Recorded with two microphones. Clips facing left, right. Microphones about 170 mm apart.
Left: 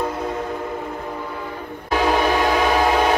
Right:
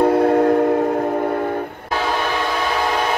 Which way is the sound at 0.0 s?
60° right (ahead or behind).